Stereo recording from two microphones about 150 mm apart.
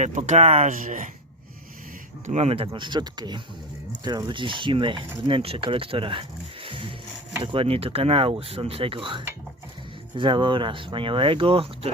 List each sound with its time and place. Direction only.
0.0 s speech: 50° right (ahead or behind)
2.2 s speech: 45° right (ahead or behind)